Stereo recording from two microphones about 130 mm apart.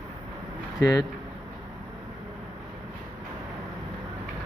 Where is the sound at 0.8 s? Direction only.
30° left (ahead or behind).